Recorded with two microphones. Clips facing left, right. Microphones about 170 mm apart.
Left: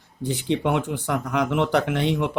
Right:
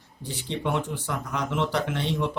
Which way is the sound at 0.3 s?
65° left (ahead or behind).